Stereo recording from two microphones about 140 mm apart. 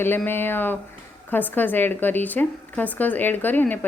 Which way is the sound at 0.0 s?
15° left (ahead or behind).